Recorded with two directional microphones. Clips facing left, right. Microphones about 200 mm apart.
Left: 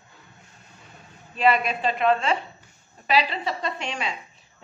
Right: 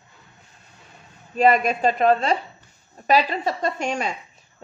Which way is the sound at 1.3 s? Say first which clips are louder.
Right 4 dB; 45° right (ahead or behind).